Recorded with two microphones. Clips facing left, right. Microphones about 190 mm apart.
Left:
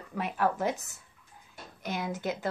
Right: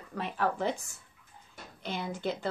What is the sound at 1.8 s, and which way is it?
Speech, 5° left (ahead or behind).